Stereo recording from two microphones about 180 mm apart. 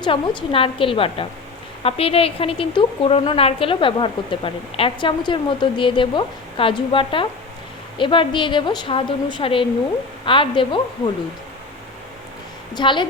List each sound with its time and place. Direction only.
0.0 s a woman's voice: 25° left (ahead or behind)
12.7 s a woman's voice: 25° left (ahead or behind)